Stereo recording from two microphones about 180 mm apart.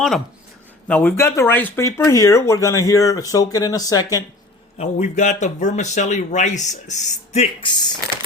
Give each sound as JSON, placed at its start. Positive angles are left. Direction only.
{"t": 0.9, "sound": "speech", "side_deg": 10}
{"t": 4.8, "sound": "speech", "side_deg": 40}